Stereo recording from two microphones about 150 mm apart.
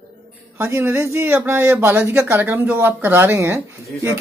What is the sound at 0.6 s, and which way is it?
Speech, 15° right (ahead or behind).